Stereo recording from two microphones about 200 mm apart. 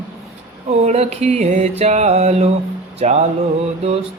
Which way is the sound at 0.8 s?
35° right (ahead or behind).